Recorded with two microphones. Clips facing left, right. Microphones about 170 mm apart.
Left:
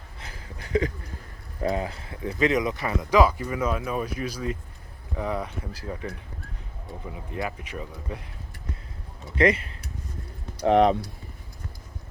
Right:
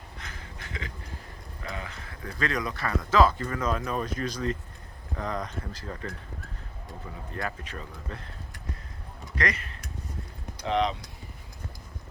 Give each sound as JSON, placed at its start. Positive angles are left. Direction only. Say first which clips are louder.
{"t": 0.2, "sound": "a sound", "louder": "left 3 dB", "side_deg": 35}
{"t": 1.7, "sound": "speech", "louder": "left 9 dB", "side_deg": 30}
{"t": 7.3, "sound": "speech", "louder": "left 3 dB", "side_deg": 10}
{"t": 9.3, "sound": "speech", "louder": "left 9 dB", "side_deg": 25}
{"t": 10.7, "sound": "speech", "louder": "left 8 dB", "side_deg": 55}